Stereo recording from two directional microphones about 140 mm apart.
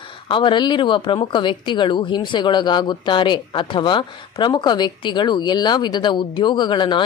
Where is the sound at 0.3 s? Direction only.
35° left (ahead or behind).